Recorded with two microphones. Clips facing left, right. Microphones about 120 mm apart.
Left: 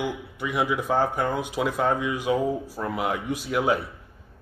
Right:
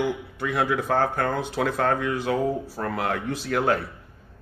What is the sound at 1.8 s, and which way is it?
Speech, 60° right (ahead or behind).